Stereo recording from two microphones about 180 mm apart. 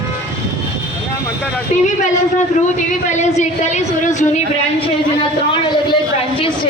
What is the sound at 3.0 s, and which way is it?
A woman's voice, 40° left (ahead or behind).